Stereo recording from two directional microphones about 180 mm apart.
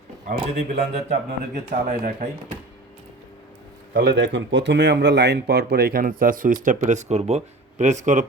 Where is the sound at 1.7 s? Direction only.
50° right (ahead or behind).